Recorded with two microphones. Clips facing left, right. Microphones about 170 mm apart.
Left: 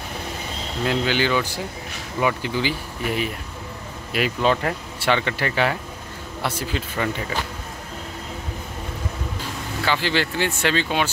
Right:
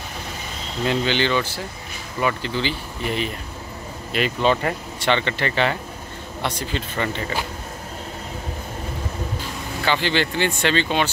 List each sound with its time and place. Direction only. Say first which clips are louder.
0.8 s speech: right 1 dB; 5° left (ahead or behind)
9.8 s speech: right 1 dB; 5° left (ahead or behind)